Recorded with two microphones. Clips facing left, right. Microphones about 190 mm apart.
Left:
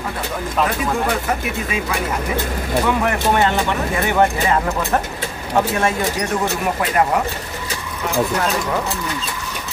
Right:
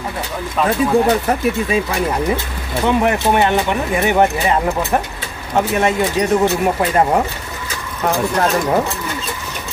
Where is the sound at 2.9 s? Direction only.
20° right (ahead or behind).